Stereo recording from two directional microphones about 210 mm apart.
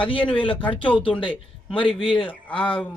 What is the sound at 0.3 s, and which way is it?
A man's voice, 25° left (ahead or behind).